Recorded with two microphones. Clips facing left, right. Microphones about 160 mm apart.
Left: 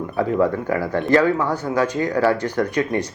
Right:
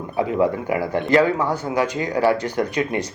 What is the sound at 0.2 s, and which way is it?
Speech, 15° right (ahead or behind).